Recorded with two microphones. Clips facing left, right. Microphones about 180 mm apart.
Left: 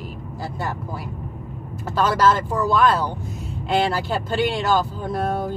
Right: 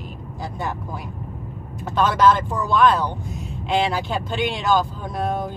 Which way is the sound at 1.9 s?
Centre (ahead or behind).